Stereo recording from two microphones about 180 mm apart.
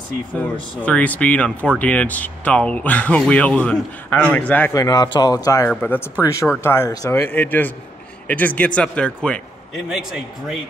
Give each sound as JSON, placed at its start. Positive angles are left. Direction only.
{"t": 0.8, "sound": "a man's voice", "side_deg": 10}